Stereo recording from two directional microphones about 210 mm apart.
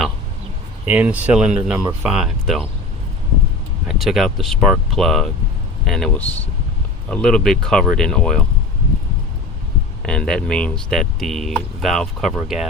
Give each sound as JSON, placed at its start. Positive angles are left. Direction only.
{"t": 0.9, "sound": "speech", "side_deg": -10}
{"t": 3.8, "sound": "speech", "side_deg": 0}
{"t": 10.0, "sound": "speech", "side_deg": 5}